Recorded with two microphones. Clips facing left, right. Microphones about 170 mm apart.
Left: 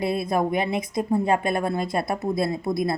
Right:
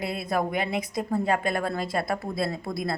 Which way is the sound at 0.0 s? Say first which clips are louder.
Left 4 dB; 25° left (ahead or behind).